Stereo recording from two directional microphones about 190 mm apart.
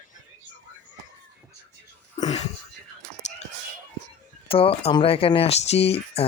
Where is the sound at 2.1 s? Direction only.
35° left (ahead or behind).